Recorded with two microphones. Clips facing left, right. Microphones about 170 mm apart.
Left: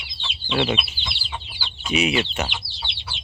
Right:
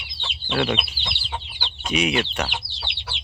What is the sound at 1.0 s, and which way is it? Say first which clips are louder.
Chicken: right 1 dB; 45° right (ahead or behind).